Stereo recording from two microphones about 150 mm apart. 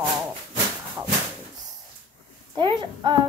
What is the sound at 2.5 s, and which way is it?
Speech, 30° right (ahead or behind).